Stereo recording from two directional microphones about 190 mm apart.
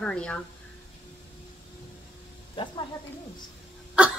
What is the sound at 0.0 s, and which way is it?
Speech, 5° left (ahead or behind).